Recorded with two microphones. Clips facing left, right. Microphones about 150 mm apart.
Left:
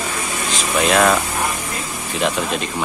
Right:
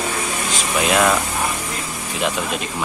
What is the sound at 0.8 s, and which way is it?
Speech, 5° right (ahead or behind).